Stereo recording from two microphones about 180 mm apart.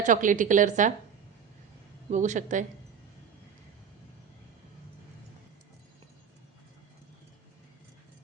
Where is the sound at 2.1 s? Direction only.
40° right (ahead or behind).